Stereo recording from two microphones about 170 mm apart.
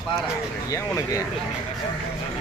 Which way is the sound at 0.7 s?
20° left (ahead or behind).